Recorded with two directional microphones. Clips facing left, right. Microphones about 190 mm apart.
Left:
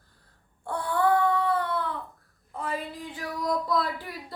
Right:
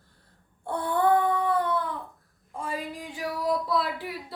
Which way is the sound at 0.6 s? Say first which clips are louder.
Right 1 dB; 20° right (ahead or behind).